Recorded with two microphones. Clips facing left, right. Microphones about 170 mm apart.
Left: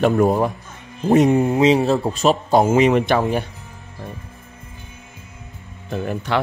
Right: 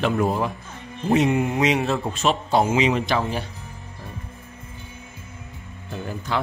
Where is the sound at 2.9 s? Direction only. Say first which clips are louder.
Left 5 dB; 55° left (ahead or behind).